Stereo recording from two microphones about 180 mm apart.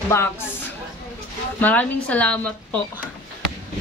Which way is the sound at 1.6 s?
10° left (ahead or behind).